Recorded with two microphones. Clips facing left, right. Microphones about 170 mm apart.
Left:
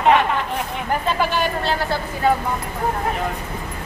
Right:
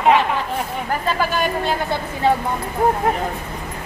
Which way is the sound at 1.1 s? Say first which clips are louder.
Right 1 dB; 15° right (ahead or behind).